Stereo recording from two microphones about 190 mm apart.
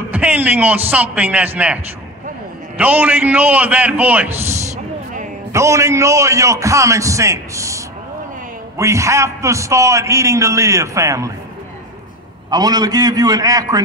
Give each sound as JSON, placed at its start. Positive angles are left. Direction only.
{"t": 0.1, "sound": "a man's voice", "side_deg": -10}
{"t": 2.8, "sound": "a man's voice", "side_deg": -10}
{"t": 12.4, "sound": "a man's voice", "side_deg": -20}